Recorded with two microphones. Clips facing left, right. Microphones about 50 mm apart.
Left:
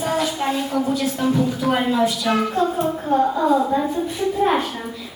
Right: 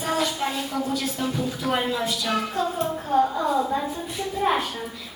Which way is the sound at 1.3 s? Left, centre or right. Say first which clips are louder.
Left 6 dB; centre.